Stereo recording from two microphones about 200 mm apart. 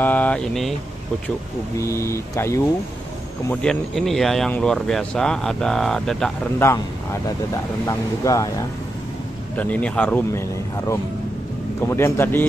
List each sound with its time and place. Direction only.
0.0 s speech: 10° left (ahead or behind)
1.8 s speech: 15° left (ahead or behind)
3.6 s speech: centre (ahead or behind)
6.6 s speech: 15° left (ahead or behind)
11.9 s speech: 15° left (ahead or behind)